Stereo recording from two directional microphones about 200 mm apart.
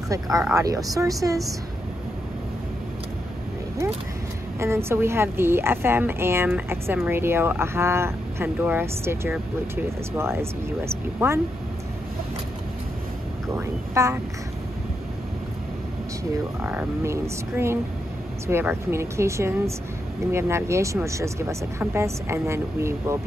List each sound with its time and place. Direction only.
0.1 s speech: 15° right (ahead or behind)
4.6 s speech: 15° right (ahead or behind)
13.6 s speech: 15° right (ahead or behind)
16.6 s speech: 10° right (ahead or behind)